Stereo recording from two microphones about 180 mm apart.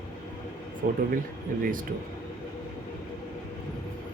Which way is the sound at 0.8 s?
55° right (ahead or behind).